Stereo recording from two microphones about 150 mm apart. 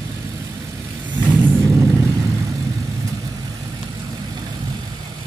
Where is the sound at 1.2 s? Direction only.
15° right (ahead or behind).